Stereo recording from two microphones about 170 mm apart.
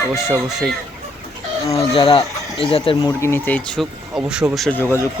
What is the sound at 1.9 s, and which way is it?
Speech, 30° left (ahead or behind).